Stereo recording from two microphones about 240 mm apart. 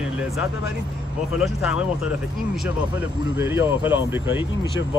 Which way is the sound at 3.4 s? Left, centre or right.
Centre.